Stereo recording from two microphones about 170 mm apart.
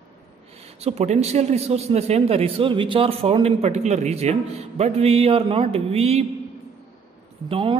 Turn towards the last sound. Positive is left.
turn(degrees=-30)  # may be behind; listen again after turning